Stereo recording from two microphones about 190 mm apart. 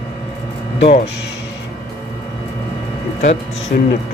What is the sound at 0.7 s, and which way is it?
Speech, 35° left (ahead or behind).